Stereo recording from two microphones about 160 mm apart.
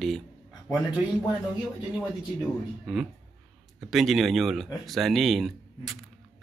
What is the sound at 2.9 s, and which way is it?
Speech, centre (ahead or behind).